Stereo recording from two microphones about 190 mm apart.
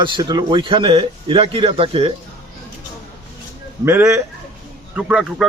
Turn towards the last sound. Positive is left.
turn(degrees=-5)  # may be behind; listen again after turning